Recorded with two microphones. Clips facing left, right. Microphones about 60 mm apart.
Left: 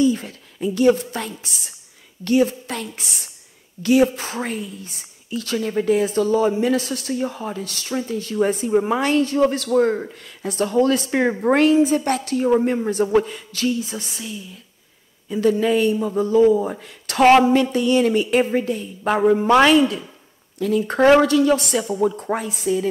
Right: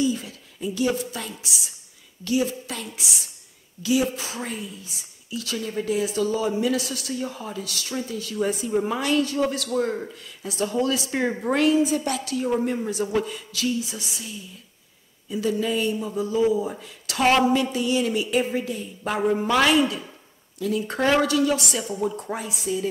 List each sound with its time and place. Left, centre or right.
0.0 s a woman's voice: left
10.4 s a woman's voice: left
15.4 s a woman's voice: left
17.3 s a woman's voice: left
17.7 s a woman's voice: left